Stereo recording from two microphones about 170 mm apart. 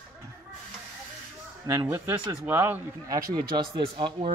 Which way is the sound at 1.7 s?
15° right (ahead or behind).